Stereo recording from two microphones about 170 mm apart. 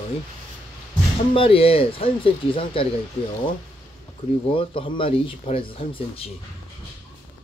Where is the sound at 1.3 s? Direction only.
35° left (ahead or behind).